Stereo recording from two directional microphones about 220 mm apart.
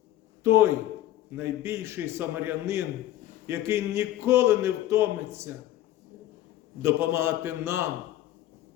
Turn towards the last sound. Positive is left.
turn(degrees=-10)  # may be behind; listen again after turning